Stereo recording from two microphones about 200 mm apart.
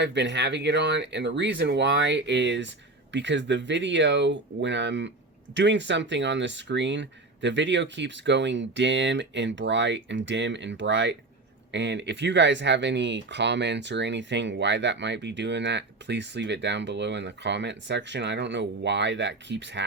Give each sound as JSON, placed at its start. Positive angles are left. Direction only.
{"t": 0.0, "sound": "speech", "side_deg": -60}